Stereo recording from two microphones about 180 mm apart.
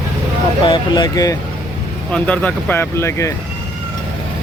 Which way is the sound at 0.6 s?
25° left (ahead or behind).